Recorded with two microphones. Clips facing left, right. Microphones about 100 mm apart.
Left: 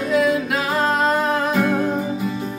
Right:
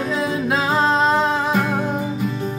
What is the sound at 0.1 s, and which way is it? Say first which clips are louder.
Music: left 5 dB; 30° right (ahead or behind).